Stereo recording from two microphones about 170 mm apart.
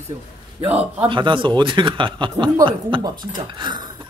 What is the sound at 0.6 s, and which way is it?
Speech, 10° right (ahead or behind).